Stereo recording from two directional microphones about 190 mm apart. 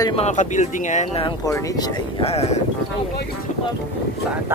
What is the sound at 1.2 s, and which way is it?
Speech, 20° left (ahead or behind).